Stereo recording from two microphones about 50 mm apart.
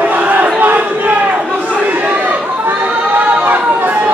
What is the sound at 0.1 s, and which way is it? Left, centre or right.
Battle cry, right.